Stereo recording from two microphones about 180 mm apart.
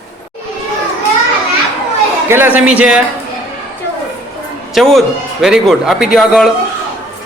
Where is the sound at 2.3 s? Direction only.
10° right (ahead or behind).